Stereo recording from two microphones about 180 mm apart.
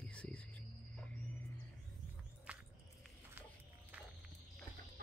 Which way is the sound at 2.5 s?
5° right (ahead or behind).